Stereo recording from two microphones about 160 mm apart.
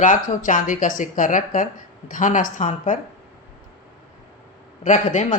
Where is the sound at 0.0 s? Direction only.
55° left (ahead or behind).